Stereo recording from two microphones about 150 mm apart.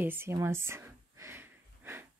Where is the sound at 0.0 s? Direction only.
15° right (ahead or behind).